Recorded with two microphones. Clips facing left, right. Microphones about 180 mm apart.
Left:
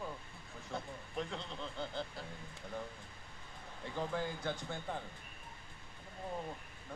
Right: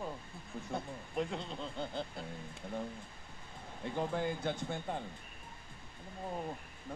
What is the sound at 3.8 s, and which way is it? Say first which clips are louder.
Speech: right 3 dB; 20° right (ahead or behind).